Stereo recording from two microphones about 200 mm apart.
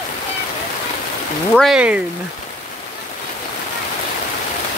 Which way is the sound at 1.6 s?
5° right (ahead or behind).